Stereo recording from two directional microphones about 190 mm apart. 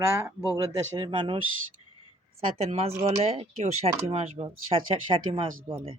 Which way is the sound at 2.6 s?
30° right (ahead or behind).